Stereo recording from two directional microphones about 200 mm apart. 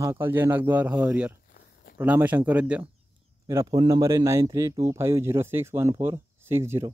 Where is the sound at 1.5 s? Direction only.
45° left (ahead or behind).